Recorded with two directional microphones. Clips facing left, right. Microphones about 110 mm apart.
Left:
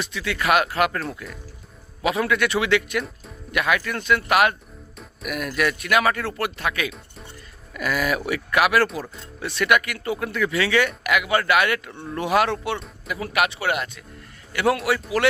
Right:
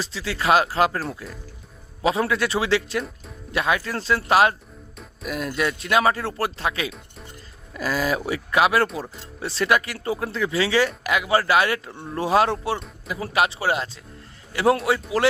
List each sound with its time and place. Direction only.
0.0 s speech: 30° right (ahead or behind)